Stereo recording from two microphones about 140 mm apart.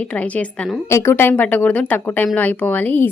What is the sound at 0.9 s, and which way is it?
A woman's voice, 15° left (ahead or behind).